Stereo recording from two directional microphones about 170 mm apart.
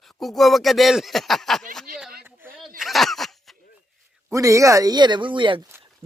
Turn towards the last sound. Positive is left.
turn(degrees=-30)  # may be behind; listen again after turning